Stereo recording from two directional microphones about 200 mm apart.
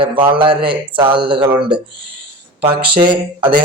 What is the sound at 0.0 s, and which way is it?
Speech, 25° right (ahead or behind).